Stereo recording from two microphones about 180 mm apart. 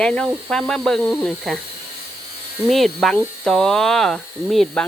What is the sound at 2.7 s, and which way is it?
Speech, centre (ahead or behind).